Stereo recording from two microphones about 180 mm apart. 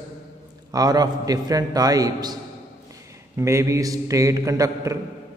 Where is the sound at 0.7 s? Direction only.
20° right (ahead or behind).